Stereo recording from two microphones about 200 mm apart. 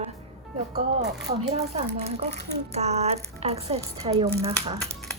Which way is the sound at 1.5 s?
30° right (ahead or behind).